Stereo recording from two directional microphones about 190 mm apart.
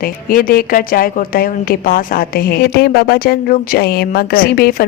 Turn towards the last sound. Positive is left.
turn(degrees=50)  # may be behind; listen again after turning